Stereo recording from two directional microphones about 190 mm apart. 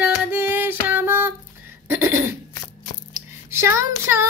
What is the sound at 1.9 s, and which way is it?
Cough, 10° right (ahead or behind).